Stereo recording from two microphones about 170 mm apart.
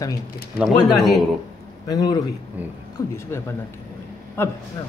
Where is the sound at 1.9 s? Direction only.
20° left (ahead or behind).